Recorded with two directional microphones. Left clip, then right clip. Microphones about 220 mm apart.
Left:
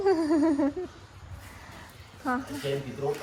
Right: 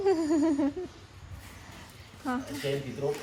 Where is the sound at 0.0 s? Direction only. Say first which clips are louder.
Left 2 dB; 15° right (ahead or behind).